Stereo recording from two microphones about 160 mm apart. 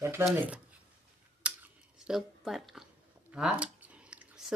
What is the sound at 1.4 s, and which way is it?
Scissors, 5° right (ahead or behind).